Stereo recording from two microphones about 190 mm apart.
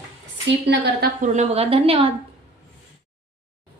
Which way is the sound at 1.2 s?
35° right (ahead or behind).